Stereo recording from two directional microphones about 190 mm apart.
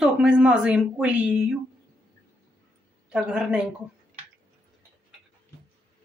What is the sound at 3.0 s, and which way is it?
Speech, 5° right (ahead or behind).